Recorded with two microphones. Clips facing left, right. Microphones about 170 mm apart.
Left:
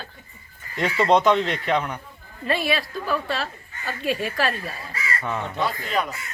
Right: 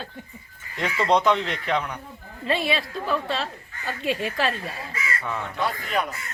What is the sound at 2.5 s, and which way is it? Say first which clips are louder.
A woman's voice: left 1 dB; 25° right (ahead or behind).